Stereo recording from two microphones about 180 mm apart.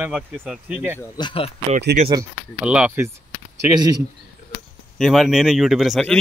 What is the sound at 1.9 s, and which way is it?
Speech, 60° right (ahead or behind).